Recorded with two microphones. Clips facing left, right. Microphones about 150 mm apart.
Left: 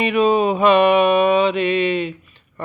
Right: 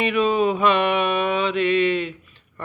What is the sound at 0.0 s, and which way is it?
Mantra, 15° left (ahead or behind).